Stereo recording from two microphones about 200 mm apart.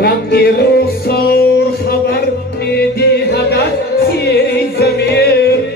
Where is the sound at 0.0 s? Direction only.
50° left (ahead or behind).